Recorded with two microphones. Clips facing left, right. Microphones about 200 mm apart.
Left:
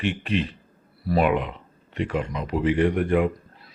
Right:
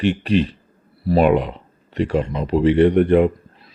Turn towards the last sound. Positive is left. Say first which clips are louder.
# right 6 dB
turn(degrees=-30)  # may be behind; listen again after turning